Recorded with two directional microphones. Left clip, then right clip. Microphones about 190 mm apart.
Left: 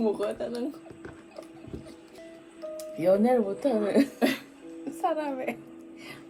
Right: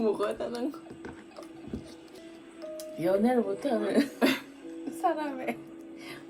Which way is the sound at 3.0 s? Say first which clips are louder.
Left 4 dB; 35° left (ahead or behind).